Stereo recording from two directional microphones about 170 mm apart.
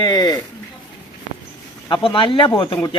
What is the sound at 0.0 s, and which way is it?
Speech, 25° left (ahead or behind).